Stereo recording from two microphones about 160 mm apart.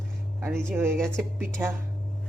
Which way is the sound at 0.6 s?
15° right (ahead or behind).